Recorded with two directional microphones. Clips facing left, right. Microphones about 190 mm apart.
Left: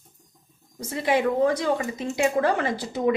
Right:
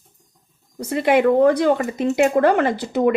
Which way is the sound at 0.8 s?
65° right (ahead or behind).